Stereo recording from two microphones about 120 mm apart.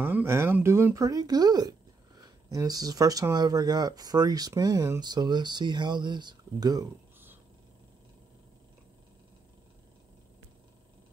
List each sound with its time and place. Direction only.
0.0 s speech: 20° right (ahead or behind)